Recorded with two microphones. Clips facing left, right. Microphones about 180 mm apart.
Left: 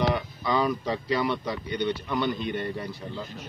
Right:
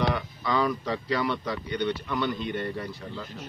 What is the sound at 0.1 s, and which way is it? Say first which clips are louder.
Speech: left 1 dB; 15° left (ahead or behind).